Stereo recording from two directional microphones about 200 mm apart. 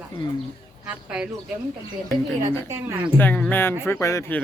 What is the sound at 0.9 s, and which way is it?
Speech, 5° right (ahead or behind).